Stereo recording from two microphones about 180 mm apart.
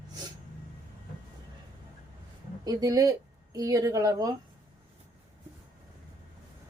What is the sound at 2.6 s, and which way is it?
A woman's voice, 20° right (ahead or behind).